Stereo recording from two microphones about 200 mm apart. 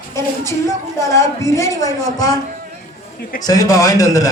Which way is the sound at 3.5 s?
15° left (ahead or behind).